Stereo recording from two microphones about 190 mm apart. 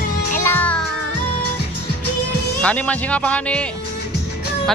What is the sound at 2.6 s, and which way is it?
Speech, 5° left (ahead or behind).